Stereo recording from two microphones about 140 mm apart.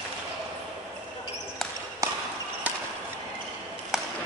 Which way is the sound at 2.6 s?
10° right (ahead or behind).